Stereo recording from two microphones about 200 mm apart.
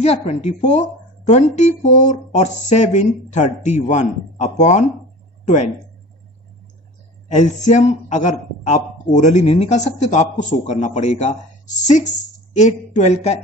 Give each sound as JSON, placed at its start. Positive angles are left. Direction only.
{"t": 0.0, "sound": "a man's voice", "side_deg": 35}
{"t": 7.2, "sound": "a man's voice", "side_deg": 35}